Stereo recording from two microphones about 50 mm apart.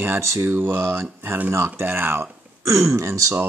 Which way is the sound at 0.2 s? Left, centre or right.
Right.